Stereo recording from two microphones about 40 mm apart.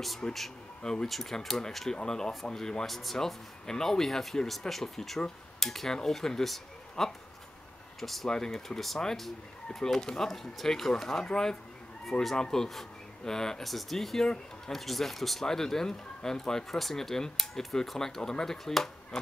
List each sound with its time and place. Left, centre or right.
0.2 s speech: centre
1.0 s speech: centre
1.9 s speech: centre
2.9 s speech: centre
3.6 s speech: centre
8.3 s speech: centre
12.1 s speech: centre
13.7 s speech: centre